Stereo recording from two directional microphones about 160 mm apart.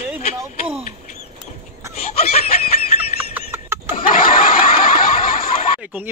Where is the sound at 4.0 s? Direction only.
60° left (ahead or behind).